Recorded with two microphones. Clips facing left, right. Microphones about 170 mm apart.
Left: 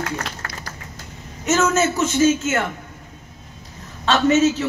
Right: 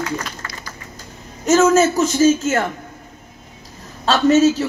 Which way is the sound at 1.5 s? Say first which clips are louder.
Right 5 dB; 35° right (ahead or behind).